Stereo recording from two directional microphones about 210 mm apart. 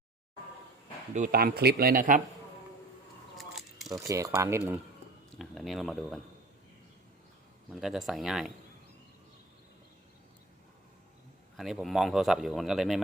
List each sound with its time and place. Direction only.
1.1 s speech: 40° right (ahead or behind)
3.3 s a sound: centre (ahead or behind)
3.9 s speech: 15° right (ahead or behind)
5.4 s speech: centre (ahead or behind)
7.7 s speech: centre (ahead or behind)
11.5 s speech: centre (ahead or behind)